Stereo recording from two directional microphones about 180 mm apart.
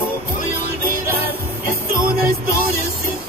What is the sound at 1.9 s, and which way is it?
Music, 55° right (ahead or behind).